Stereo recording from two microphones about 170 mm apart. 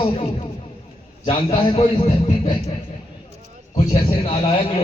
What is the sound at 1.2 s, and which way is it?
A man's voice, 30° left (ahead or behind).